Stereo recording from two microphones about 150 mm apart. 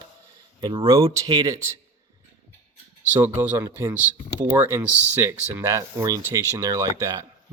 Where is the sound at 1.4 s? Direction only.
20° right (ahead or behind).